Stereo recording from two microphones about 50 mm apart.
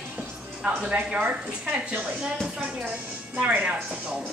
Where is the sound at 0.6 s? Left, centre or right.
Right.